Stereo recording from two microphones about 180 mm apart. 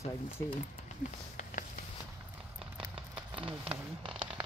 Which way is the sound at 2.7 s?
30° right (ahead or behind).